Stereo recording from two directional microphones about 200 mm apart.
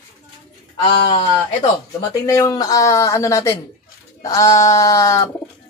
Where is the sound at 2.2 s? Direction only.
15° left (ahead or behind).